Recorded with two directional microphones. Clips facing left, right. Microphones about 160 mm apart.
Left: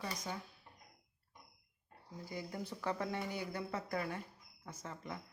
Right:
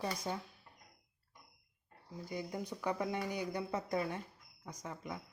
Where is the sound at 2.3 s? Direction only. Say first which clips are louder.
Right 3 dB; 20° right (ahead or behind).